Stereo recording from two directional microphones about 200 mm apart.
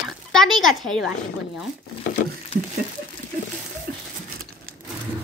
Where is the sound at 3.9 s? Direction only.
50° right (ahead or behind).